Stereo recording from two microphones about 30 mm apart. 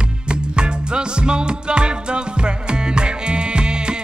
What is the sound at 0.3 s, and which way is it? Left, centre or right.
Music, right.